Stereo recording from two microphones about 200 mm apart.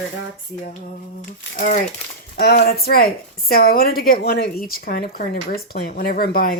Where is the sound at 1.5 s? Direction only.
40° left (ahead or behind).